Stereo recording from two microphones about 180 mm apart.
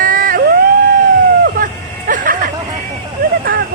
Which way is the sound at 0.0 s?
50° right (ahead or behind).